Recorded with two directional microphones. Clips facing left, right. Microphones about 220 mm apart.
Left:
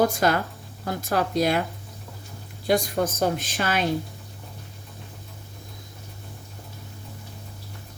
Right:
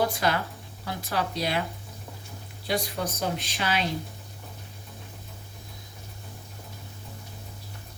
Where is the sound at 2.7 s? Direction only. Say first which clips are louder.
Left 7 dB; 45° left (ahead or behind).